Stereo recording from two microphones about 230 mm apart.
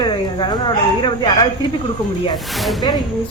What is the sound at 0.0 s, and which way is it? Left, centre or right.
Speech, centre.